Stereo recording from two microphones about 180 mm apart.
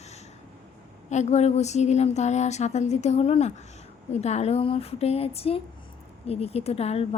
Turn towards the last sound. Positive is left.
turn(degrees=35)  # may be behind; listen again after turning